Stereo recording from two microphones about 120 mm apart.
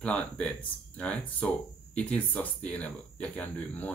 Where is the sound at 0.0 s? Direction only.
10° left (ahead or behind).